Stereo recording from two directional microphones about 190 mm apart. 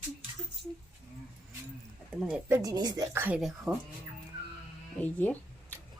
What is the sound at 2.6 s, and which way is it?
Speech, 20° right (ahead or behind).